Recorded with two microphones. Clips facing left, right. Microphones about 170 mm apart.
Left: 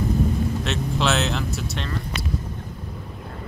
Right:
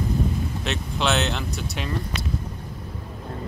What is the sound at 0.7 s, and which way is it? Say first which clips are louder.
Speech: right 1 dB; centre (ahead or behind).